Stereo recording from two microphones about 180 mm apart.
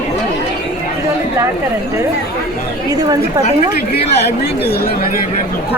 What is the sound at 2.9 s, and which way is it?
Speech, 20° right (ahead or behind).